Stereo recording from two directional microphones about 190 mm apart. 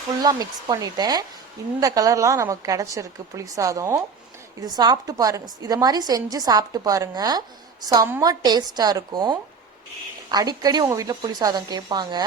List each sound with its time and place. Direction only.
0.2 s a woman's voice: 20° right (ahead or behind)